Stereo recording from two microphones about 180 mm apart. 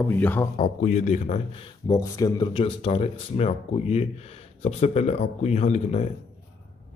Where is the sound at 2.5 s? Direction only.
35° left (ahead or behind).